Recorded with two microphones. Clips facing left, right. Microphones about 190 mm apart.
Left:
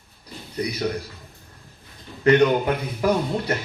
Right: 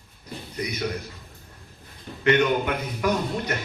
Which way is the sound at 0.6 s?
35° left (ahead or behind).